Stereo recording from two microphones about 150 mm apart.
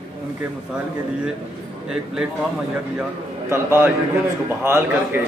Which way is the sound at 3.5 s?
15° right (ahead or behind).